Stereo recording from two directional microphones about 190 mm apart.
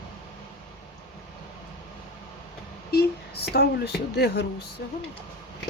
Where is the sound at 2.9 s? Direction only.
55° left (ahead or behind).